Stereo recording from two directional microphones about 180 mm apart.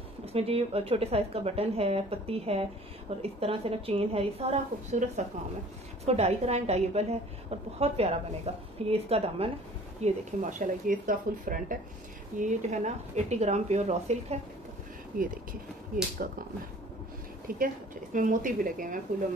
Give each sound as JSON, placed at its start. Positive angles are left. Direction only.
{"t": 0.2, "sound": "a woman's voice", "side_deg": -35}
{"t": 10.0, "sound": "a woman's voice", "side_deg": -45}
{"t": 15.1, "sound": "speech", "side_deg": -50}
{"t": 17.5, "sound": "speech", "side_deg": -50}